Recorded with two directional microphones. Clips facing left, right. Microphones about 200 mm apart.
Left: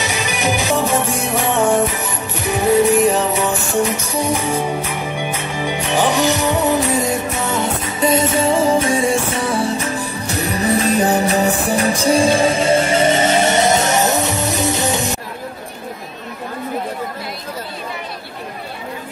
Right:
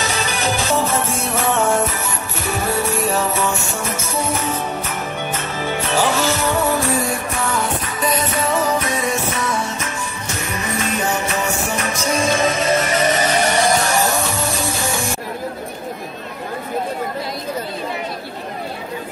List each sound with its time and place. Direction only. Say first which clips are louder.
0.0 s music: left 1 dB; 15° left (ahead or behind)